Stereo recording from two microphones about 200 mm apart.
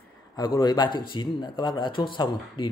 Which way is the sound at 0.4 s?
20° left (ahead or behind).